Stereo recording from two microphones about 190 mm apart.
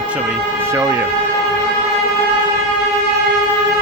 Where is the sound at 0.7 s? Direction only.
15° right (ahead or behind).